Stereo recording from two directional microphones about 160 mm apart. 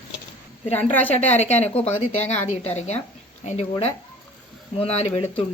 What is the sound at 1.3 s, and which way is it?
A woman's voice, 45° left (ahead or behind).